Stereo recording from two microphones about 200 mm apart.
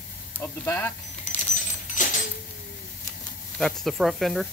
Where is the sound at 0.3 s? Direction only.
10° left (ahead or behind).